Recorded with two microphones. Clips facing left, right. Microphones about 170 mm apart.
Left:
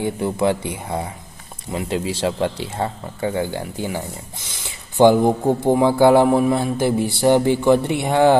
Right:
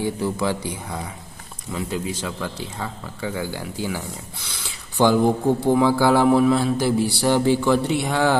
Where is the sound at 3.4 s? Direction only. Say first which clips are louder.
Left 4 dB; 20° left (ahead or behind).